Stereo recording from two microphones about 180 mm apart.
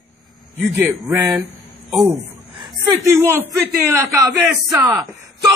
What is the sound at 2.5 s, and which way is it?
A man's voice, 20° right (ahead or behind).